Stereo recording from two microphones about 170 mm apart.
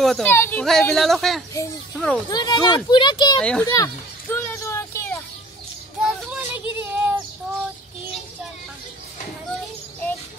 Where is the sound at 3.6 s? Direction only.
20° left (ahead or behind).